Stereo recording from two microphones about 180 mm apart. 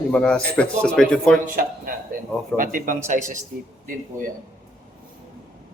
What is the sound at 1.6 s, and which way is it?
Speech, 50° right (ahead or behind).